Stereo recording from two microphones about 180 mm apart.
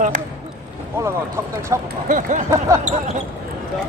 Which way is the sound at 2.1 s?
45° right (ahead or behind).